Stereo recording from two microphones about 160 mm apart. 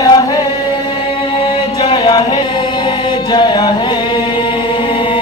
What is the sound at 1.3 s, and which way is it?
Chant, 30° left (ahead or behind).